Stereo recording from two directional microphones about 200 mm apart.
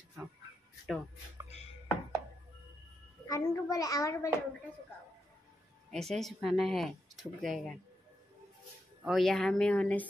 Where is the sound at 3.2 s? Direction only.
15° left (ahead or behind).